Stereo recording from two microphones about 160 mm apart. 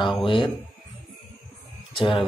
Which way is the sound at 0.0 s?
30° left (ahead or behind).